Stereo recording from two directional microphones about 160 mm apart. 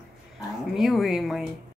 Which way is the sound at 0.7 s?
Centre (ahead or behind).